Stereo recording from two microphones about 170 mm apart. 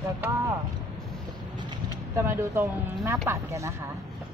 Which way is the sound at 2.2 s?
15° right (ahead or behind).